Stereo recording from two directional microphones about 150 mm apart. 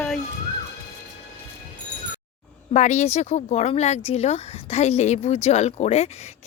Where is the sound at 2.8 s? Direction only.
50° left (ahead or behind).